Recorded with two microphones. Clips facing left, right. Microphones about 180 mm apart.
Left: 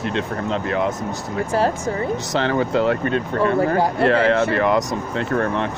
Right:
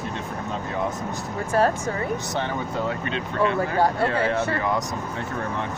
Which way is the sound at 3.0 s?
50° left (ahead or behind).